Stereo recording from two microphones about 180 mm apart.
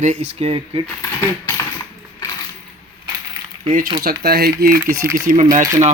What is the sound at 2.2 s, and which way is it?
Coin, 20° left (ahead or behind).